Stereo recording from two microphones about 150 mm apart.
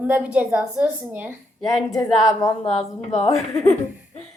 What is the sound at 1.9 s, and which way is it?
A woman's voice, 20° left (ahead or behind).